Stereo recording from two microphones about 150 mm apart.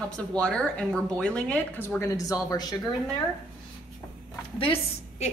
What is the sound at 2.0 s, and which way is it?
Speech, 25° left (ahead or behind).